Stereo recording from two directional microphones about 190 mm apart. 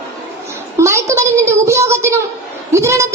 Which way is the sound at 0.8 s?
15° right (ahead or behind).